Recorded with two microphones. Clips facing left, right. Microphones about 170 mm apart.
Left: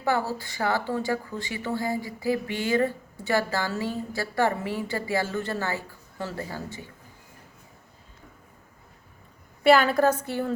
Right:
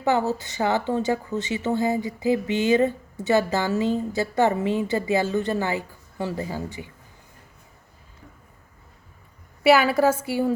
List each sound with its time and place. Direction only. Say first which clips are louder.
0.0 s a woman's voice: right 4 dB; 20° right (ahead or behind)
9.6 s a woman's voice: right 1 dB; 5° right (ahead or behind)